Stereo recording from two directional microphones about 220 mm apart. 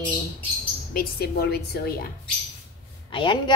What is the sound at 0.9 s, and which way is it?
Speech, 45° left (ahead or behind).